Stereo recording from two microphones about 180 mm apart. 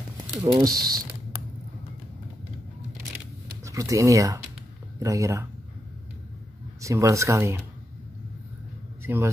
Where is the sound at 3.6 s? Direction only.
20° right (ahead or behind).